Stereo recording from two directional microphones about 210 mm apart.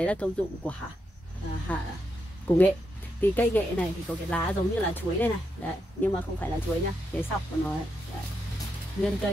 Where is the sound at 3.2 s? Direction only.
10° left (ahead or behind).